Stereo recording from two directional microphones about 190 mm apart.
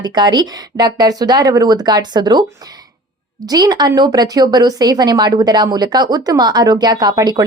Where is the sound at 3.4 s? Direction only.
20° right (ahead or behind).